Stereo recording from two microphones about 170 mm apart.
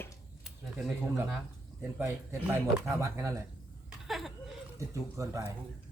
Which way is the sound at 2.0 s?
15° right (ahead or behind).